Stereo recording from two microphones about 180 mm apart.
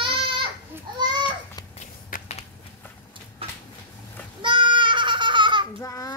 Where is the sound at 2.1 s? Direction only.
50° left (ahead or behind).